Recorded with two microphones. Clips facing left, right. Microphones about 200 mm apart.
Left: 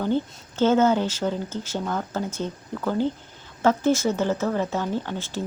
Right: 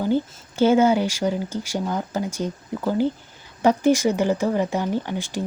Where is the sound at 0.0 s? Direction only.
10° right (ahead or behind).